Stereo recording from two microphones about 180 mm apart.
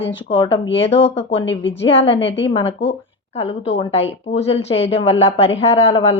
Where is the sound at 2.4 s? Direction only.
30° left (ahead or behind).